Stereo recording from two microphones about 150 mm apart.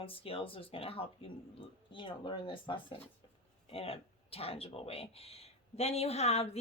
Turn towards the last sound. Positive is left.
turn(degrees=45)  # may be behind; listen again after turning